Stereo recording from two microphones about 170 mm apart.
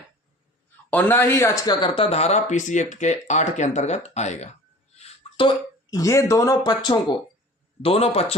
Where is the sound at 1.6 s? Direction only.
25° left (ahead or behind).